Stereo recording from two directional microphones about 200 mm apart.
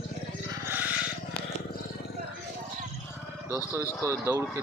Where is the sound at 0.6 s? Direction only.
10° right (ahead or behind).